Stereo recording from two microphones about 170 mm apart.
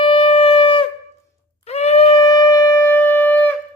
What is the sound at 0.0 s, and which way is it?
Shofar, 30° left (ahead or behind).